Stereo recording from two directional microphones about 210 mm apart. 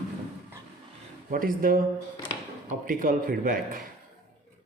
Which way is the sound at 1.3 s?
40° right (ahead or behind).